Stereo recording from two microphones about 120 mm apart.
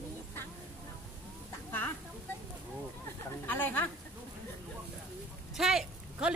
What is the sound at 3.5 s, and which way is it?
Speech, 15° left (ahead or behind).